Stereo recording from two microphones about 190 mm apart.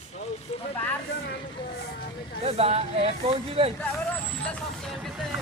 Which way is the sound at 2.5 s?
30° right (ahead or behind).